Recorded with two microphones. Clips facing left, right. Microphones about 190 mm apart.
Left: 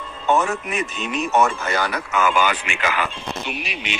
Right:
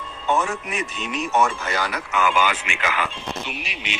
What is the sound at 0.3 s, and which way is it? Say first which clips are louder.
A man's voice: left 3 dB; 60° left (ahead or behind).